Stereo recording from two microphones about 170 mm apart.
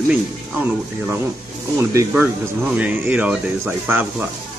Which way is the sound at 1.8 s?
15° right (ahead or behind).